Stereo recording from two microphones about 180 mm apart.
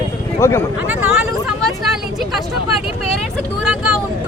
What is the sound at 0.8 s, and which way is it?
Vehicle, 5° right (ahead or behind).